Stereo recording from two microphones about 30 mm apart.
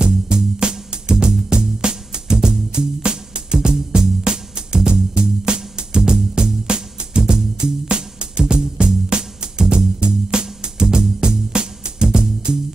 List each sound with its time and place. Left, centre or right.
0.0 s music: right
2.3 s music: centre
2.7 s music: right
3.5 s music: centre